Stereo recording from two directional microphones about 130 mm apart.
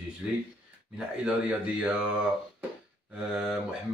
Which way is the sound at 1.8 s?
10° right (ahead or behind).